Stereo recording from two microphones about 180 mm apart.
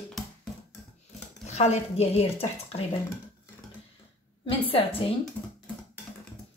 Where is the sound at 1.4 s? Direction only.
40° left (ahead or behind).